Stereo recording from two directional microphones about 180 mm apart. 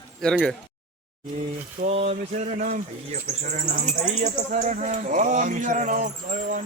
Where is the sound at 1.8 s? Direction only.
35° right (ahead or behind).